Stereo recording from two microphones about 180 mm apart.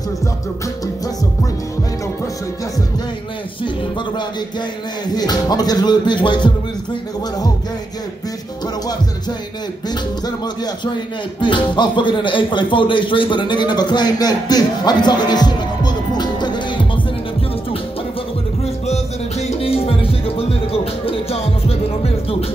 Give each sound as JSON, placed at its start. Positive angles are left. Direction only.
{"t": 5.1, "sound": "music", "side_deg": 20}
{"t": 11.4, "sound": "speech", "side_deg": 25}
{"t": 19.4, "sound": "music", "side_deg": 30}